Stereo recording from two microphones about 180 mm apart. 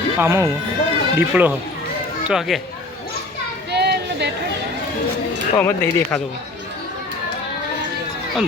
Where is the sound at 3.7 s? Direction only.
65° right (ahead or behind).